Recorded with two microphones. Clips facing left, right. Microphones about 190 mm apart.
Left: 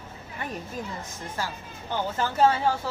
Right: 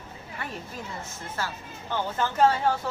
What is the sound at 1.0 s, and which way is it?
Speech, 15° left (ahead or behind).